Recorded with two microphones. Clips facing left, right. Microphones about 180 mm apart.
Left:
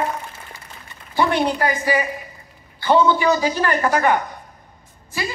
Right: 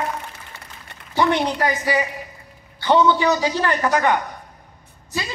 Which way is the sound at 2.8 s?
15° right (ahead or behind).